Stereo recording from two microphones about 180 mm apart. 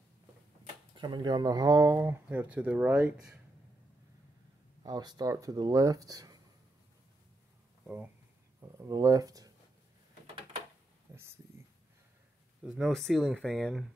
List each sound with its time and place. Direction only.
0.9 s speech: 25° right (ahead or behind); by 3.1 s 5° right (ahead or behind)
4.8 s speech: 20° right (ahead or behind)
7.8 s speech: 10° right (ahead or behind)
8.5 s speech: 20° right (ahead or behind)
12.6 s speech: centre (ahead or behind)